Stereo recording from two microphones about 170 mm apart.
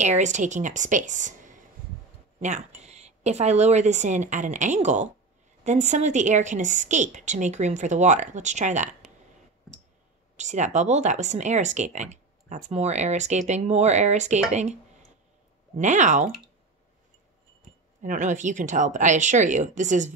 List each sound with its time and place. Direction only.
0.0 s speech: 45° right (ahead or behind)
10.3 s speech: 45° right (ahead or behind)
15.8 s speech: 45° right (ahead or behind)
18.0 s speech: 45° right (ahead or behind)